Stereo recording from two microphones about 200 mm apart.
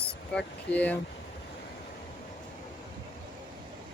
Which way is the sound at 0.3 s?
5° left (ahead or behind).